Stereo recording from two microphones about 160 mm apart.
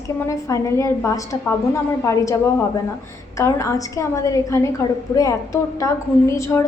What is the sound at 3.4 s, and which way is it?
A woman's voice, 20° left (ahead or behind).